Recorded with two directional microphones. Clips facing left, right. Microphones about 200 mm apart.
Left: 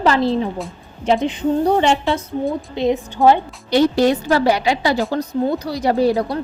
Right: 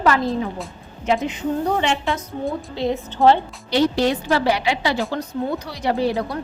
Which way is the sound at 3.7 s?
45° left (ahead or behind).